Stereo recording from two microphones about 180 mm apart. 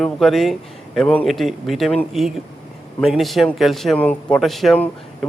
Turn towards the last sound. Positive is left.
turn(degrees=5)  # may be behind; listen again after turning